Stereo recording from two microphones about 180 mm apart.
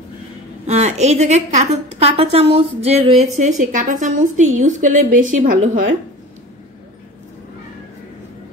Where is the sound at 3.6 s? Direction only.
45° right (ahead or behind).